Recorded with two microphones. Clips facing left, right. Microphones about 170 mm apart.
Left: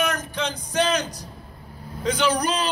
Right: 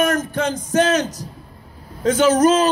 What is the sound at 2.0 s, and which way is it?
Speech, 45° right (ahead or behind).